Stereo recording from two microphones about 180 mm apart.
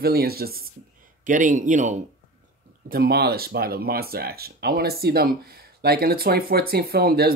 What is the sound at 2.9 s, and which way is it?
Speech, 60° right (ahead or behind).